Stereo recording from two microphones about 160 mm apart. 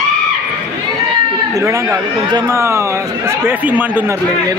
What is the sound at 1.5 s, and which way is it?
Speech, 20° right (ahead or behind).